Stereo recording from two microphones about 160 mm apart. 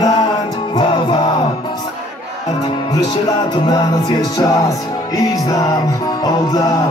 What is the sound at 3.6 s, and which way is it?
Music, 25° left (ahead or behind).